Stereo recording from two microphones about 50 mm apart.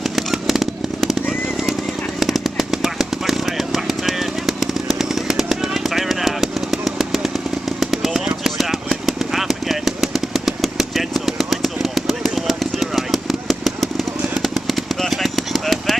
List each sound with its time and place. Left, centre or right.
0.0 s chainsaw: centre
1.7 s a sound: centre
14.4 s machine gun: centre